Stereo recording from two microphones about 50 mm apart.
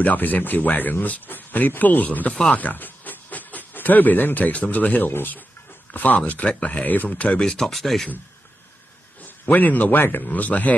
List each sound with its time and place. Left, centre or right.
0.0 s speech: left
7.6 s speech: centre
9.2 s a man's voice: left
10.2 s speech: left